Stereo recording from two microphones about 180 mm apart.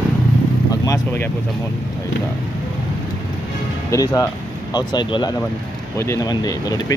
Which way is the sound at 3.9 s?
20° left (ahead or behind).